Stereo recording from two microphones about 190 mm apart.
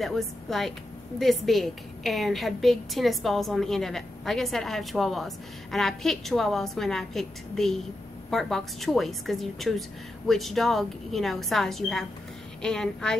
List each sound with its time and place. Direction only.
0.0 s a woman's voice: centre (ahead or behind)